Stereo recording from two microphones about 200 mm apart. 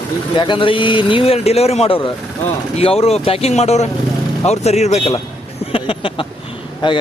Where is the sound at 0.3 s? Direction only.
25° left (ahead or behind).